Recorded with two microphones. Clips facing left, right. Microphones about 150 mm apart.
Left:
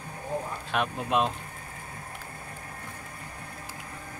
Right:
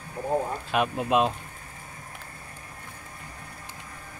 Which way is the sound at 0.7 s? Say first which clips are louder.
Right 3 dB; 5° right (ahead or behind).